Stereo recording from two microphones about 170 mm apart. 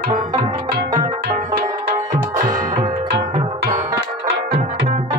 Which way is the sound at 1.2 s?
70° right (ahead or behind).